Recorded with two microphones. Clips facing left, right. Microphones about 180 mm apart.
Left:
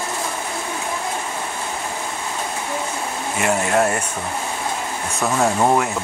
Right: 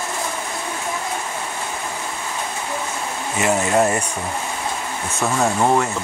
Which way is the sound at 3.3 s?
5° right (ahead or behind).